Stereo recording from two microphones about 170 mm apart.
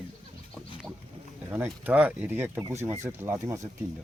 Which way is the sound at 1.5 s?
10° right (ahead or behind).